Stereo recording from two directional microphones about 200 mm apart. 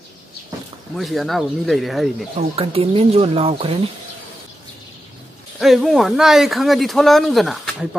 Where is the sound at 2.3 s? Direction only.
30° right (ahead or behind).